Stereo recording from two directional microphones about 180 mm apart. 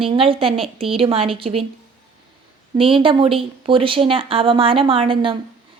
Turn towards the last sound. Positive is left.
turn(degrees=-30)  # may be behind; listen again after turning